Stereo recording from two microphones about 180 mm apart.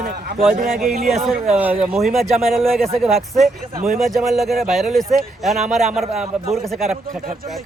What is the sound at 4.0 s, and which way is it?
Speech, centre (ahead or behind).